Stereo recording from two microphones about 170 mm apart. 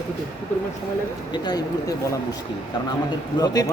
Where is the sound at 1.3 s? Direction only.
25° left (ahead or behind).